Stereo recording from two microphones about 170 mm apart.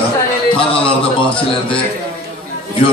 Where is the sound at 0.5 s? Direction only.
30° left (ahead or behind).